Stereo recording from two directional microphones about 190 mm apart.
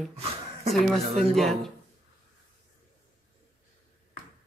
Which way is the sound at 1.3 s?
Centre (ahead or behind).